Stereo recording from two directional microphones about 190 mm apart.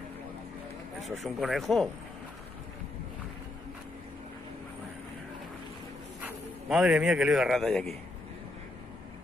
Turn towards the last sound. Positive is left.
turn(degrees=0)  # may be behind; listen again after turning